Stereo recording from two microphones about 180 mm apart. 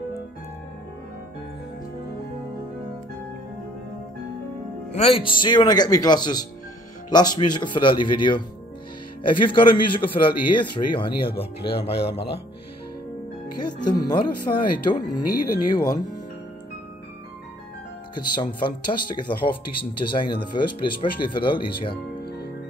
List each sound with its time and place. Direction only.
4.9 s a man's voice: 30° left (ahead or behind)
13.6 s a man's voice: 25° left (ahead or behind)
18.1 s a man's voice: 25° left (ahead or behind)
20.0 s a man's voice: 25° left (ahead or behind)